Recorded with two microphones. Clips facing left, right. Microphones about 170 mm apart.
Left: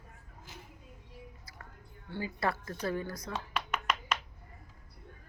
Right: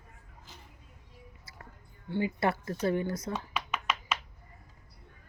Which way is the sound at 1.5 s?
25° right (ahead or behind).